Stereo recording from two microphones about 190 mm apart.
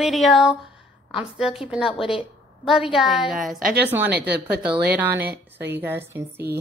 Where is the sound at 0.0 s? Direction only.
Centre (ahead or behind).